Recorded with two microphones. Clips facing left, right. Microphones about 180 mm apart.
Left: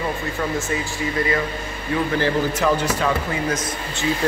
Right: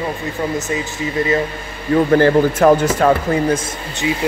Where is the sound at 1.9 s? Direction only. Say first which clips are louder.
Right 9 dB; 50° right (ahead or behind).